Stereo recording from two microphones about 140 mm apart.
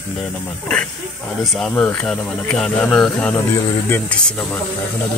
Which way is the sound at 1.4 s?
5° left (ahead or behind).